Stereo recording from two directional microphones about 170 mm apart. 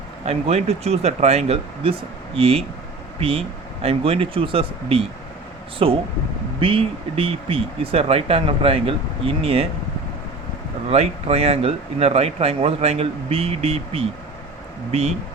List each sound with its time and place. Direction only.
0.3 s speech: 40° right (ahead or behind)
10.9 s speech: 35° right (ahead or behind)